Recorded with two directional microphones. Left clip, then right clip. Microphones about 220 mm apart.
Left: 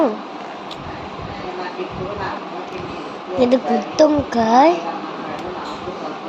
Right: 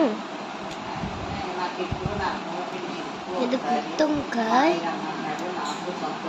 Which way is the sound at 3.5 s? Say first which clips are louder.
Left 8 dB; 20° left (ahead or behind).